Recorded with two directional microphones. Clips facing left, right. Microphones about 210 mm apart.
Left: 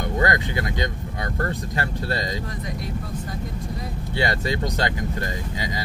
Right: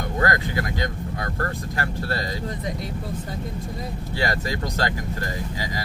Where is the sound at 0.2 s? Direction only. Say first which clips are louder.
Even; 20° left (ahead or behind).